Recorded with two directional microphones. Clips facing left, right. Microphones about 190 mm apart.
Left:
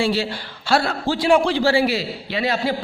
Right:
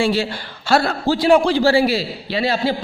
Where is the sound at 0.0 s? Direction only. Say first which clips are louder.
Right 2 dB; 50° right (ahead or behind).